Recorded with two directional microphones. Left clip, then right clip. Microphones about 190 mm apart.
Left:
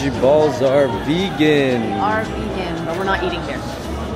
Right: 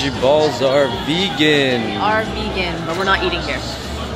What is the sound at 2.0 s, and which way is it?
Speech, 15° right (ahead or behind).